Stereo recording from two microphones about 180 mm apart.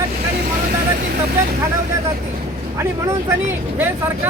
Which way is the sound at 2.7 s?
15° right (ahead or behind).